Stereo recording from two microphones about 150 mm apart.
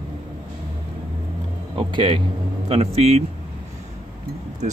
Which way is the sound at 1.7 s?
30° right (ahead or behind).